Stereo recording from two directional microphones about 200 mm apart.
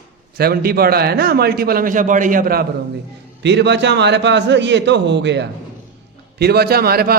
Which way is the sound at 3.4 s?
60° right (ahead or behind).